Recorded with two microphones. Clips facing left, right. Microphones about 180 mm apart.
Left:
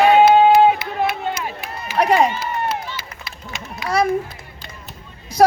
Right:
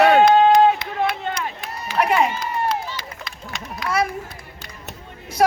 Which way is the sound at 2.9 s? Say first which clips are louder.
Right 1 dB; 5° left (ahead or behind).